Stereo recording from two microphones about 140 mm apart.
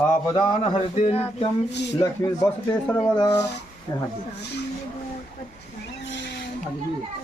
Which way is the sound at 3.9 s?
25° left (ahead or behind).